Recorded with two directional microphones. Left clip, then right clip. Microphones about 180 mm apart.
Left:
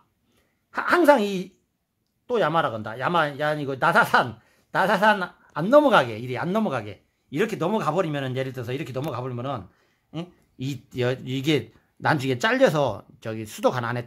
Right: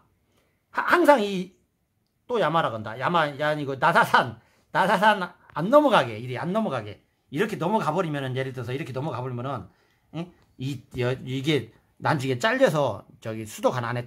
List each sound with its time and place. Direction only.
0.7 s speech: 25° left (ahead or behind)